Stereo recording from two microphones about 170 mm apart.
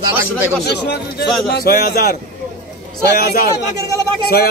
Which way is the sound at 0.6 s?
70° left (ahead or behind).